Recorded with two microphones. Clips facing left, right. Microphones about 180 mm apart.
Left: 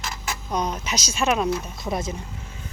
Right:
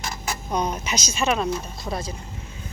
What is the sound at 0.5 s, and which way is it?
Speech, 5° right (ahead or behind).